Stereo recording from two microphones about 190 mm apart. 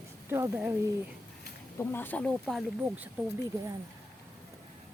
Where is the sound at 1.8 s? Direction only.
10° left (ahead or behind).